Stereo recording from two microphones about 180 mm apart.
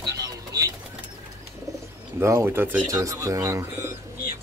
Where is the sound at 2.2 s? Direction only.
15° right (ahead or behind).